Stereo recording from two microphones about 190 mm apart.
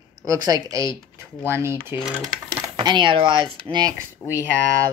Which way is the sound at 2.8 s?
25° right (ahead or behind).